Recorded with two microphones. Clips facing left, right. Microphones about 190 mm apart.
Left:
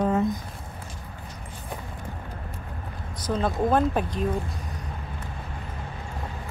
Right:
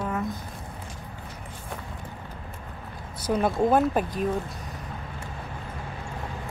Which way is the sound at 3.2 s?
10° right (ahead or behind).